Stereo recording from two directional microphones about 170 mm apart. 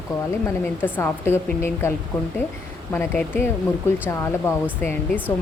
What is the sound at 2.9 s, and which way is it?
A woman's voice, 10° left (ahead or behind).